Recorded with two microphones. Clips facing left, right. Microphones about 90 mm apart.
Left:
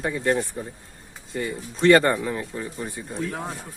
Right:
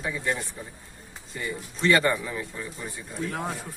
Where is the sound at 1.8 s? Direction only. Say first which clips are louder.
Left 6 dB; 45° left (ahead or behind).